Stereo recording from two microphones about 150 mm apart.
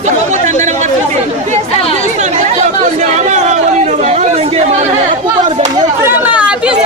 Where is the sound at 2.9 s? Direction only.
50° right (ahead or behind).